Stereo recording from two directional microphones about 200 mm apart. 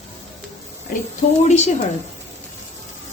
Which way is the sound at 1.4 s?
35° left (ahead or behind).